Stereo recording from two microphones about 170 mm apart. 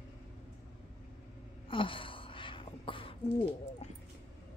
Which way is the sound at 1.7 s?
30° left (ahead or behind).